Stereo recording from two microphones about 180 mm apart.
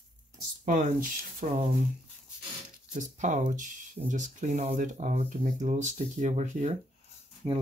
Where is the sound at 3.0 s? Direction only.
45° right (ahead or behind).